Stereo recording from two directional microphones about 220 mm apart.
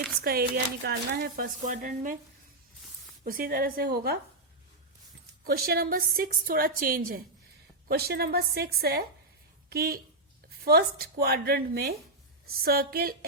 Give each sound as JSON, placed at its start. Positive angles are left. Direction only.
{"t": 0.2, "sound": "speech", "side_deg": -45}
{"t": 3.2, "sound": "a woman's voice", "side_deg": -40}
{"t": 5.5, "sound": "a woman's voice", "side_deg": -45}